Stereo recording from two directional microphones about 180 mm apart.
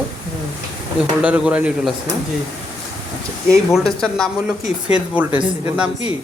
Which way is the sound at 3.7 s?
5° left (ahead or behind).